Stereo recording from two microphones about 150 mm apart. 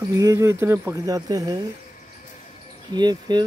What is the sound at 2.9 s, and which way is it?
Speech, 30° right (ahead or behind).